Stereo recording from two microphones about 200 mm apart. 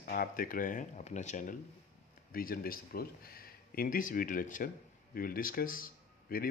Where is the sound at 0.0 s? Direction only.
50° left (ahead or behind).